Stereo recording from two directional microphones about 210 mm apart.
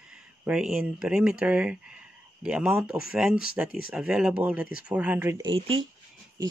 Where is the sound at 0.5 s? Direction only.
5° right (ahead or behind).